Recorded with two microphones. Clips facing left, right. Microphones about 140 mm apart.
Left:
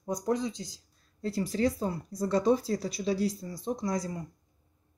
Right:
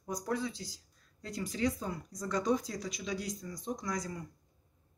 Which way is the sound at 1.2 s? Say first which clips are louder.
Left 6 dB; 35° left (ahead or behind).